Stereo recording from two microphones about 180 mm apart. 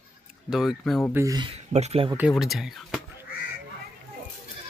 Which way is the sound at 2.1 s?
5° right (ahead or behind).